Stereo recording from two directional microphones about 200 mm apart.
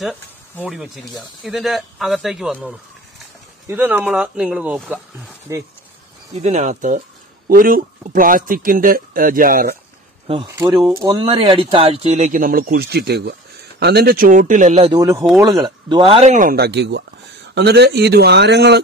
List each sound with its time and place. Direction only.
0.0 s snake: 5° left (ahead or behind)
0.7 s speech: centre (ahead or behind)
6.4 s speech: 35° right (ahead or behind)
10.2 s speech: 30° right (ahead or behind)
14.9 s a man's voice: 15° right (ahead or behind); by 18.8 s 60° right (ahead or behind)